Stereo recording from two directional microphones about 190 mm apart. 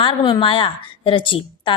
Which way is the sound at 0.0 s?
25° left (ahead or behind).